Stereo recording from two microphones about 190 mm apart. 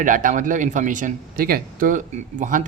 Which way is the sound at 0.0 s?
45° right (ahead or behind).